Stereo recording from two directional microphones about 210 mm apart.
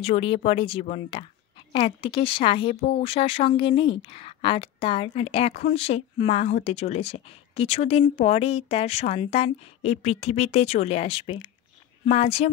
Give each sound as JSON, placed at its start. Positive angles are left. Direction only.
{"t": 0.0, "sound": "a woman's voice", "side_deg": 25}